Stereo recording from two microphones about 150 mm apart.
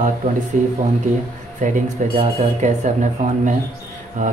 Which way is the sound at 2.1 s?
45° right (ahead or behind).